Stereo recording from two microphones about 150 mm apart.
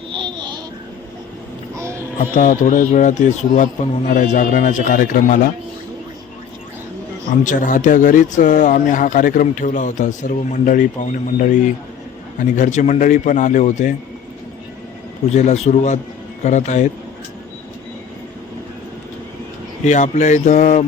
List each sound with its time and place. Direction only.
0.1 s babbling: 30° right (ahead or behind)
2.3 s a man's voice: 60° left (ahead or behind)
7.4 s a man's voice: 60° left (ahead or behind)
15.4 s speech: 50° left (ahead or behind)
19.8 s speech: 50° left (ahead or behind)